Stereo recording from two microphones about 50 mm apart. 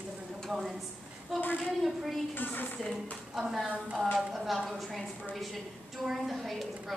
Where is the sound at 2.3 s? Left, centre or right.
Left.